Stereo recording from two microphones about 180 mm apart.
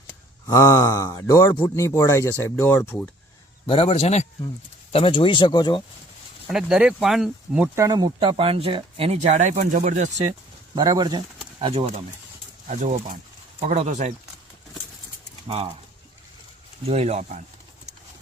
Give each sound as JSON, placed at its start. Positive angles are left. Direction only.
{"t": 0.4, "sound": "speech", "side_deg": 15}
{"t": 3.7, "sound": "a man's voice", "side_deg": 30}
{"t": 6.5, "sound": "speech", "side_deg": -5}
{"t": 7.8, "sound": "speech", "side_deg": -20}
{"t": 10.8, "sound": "speech", "side_deg": -25}
{"t": 12.6, "sound": "speech", "side_deg": -40}
{"t": 15.4, "sound": "speech", "side_deg": -35}
{"t": 16.9, "sound": "speech", "side_deg": -35}